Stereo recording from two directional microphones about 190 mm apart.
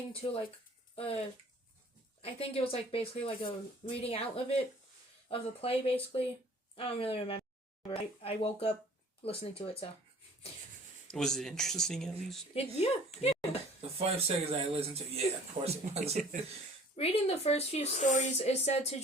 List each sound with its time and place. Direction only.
0.1 s a woman's voice: 30° left (ahead or behind)
2.2 s a woman's voice: 30° left (ahead or behind)
11.1 s speech: 5° left (ahead or behind)
12.5 s speech: 30° left (ahead or behind)
14.0 s speech: 30° right (ahead or behind)
16.9 s speech: 30° left (ahead or behind)